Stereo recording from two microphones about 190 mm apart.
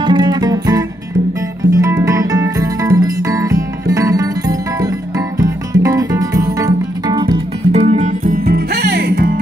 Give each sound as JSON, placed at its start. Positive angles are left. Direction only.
{"t": 0.0, "sound": "music", "side_deg": -25}
{"t": 7.7, "sound": "music", "side_deg": -35}
{"t": 8.5, "sound": "music", "side_deg": -55}